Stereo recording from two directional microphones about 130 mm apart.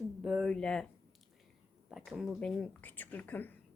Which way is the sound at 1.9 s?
5° right (ahead or behind).